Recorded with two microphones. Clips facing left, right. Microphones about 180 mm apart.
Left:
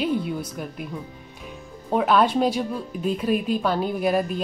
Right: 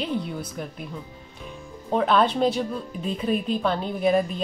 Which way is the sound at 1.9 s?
10° left (ahead or behind).